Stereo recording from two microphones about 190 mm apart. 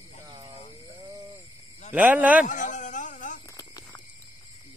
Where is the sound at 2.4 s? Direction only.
40° left (ahead or behind).